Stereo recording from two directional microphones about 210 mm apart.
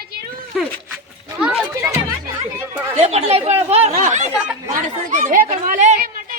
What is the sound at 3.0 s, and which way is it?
Speech, 30° right (ahead or behind).